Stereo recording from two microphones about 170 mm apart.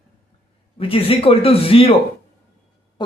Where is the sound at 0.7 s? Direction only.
35° left (ahead or behind).